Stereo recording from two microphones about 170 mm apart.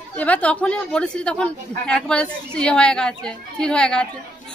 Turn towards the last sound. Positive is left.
turn(degrees=5)  # may be behind; listen again after turning